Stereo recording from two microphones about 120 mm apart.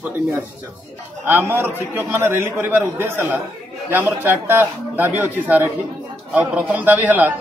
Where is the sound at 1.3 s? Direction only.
20° right (ahead or behind).